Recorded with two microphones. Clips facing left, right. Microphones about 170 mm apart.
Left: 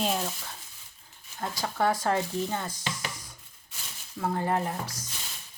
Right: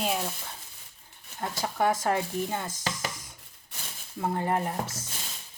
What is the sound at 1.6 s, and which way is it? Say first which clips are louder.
Speech: even; 20° right (ahead or behind).